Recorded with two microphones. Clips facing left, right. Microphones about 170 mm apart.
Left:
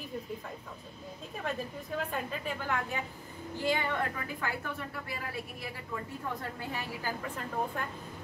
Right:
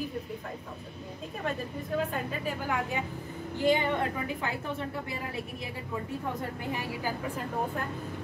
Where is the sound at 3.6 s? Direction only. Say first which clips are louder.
Right 5 dB; 20° right (ahead or behind).